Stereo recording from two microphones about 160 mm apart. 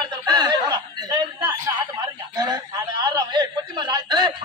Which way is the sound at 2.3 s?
25° right (ahead or behind).